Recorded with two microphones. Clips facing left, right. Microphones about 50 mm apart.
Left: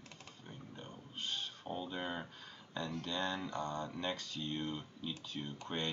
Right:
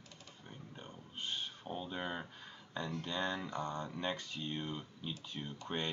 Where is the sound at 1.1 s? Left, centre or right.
Centre.